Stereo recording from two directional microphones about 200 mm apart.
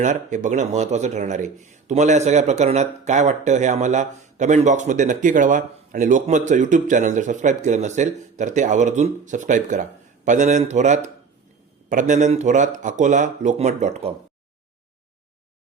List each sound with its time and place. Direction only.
0.0 s speech: 40° right (ahead or behind)